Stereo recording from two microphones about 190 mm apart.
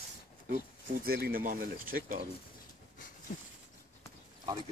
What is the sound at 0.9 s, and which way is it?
Speech, 50° right (ahead or behind).